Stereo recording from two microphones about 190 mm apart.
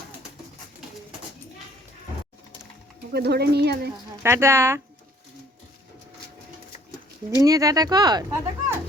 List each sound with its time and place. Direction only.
3.1 s speech: 60° right (ahead or behind)
4.2 s speech: 15° right (ahead or behind)
7.3 s speech: 20° right (ahead or behind)